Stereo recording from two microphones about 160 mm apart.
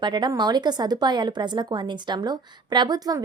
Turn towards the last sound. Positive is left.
turn(degrees=-25)  # may be behind; listen again after turning